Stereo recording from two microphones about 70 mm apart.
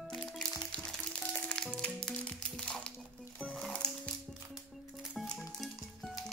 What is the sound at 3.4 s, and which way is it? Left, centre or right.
Music, right.